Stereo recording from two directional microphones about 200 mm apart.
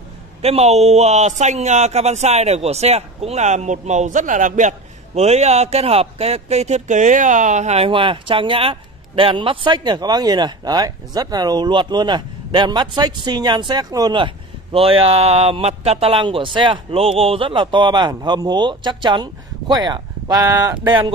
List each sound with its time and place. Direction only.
0.4 s speech: 30° right (ahead or behind)